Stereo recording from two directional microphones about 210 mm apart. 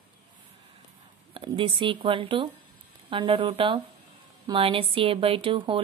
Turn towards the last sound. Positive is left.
turn(degrees=-25)  # may be behind; listen again after turning